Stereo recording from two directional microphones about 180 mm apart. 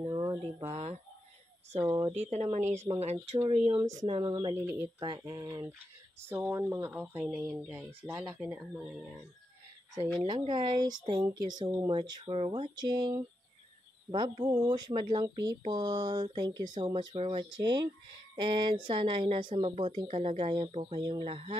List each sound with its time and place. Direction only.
0.0 s a sound: 20° right (ahead or behind)
0.7 s speech: 40° right (ahead or behind)
1.8 s speech: 20° right (ahead or behind)
2.1 s speech: 40° right (ahead or behind)
3.8 s speech: 20° right (ahead or behind)
4.6 s speech: 10° right (ahead or behind)
5.0 s speech: 25° right (ahead or behind)
11.1 s speech: 20° right (ahead or behind)